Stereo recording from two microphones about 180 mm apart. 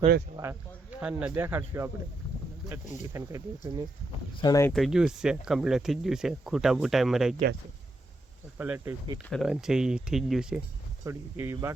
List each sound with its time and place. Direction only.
0.3 s speech: 10° right (ahead or behind)
4.4 s speech: 20° left (ahead or behind)
4.7 s speech: centre (ahead or behind)
8.5 s speech: 10° right (ahead or behind)
11.0 s speech: 15° right (ahead or behind)